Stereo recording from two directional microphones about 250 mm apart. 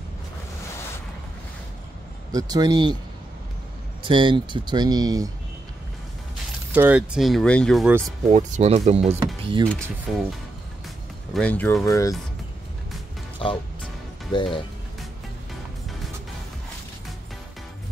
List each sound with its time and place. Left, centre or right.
2.3 s speech: centre
4.0 s speech: centre
6.7 s speech: centre
8.3 s speech: right
10.1 s speech: centre
11.3 s speech: centre
14.3 s speech: left